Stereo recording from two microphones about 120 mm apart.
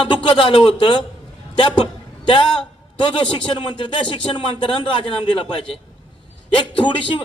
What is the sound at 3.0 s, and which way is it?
Speech, 45° left (ahead or behind).